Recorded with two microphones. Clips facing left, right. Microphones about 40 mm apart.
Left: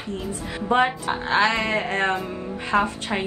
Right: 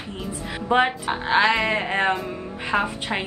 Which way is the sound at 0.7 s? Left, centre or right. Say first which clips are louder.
Even; right.